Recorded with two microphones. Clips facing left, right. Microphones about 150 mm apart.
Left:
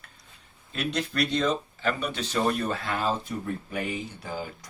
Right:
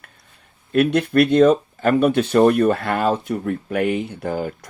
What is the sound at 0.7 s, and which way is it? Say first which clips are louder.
Speech: right 13 dB; 60° right (ahead or behind).